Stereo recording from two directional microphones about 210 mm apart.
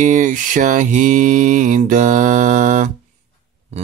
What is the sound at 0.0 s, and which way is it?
Speech, 35° right (ahead or behind).